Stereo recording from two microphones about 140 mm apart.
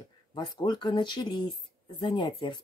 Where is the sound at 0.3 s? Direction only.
30° left (ahead or behind).